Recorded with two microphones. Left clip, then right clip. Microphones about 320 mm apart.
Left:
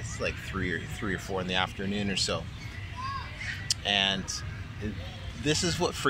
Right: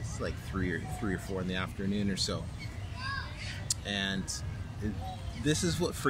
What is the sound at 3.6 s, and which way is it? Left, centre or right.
Speech, centre.